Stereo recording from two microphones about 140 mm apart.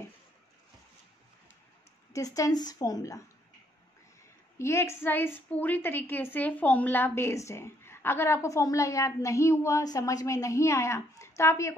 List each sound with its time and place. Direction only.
2.1 s a woman's voice: 25° left (ahead or behind)
4.6 s a woman's voice: 20° left (ahead or behind)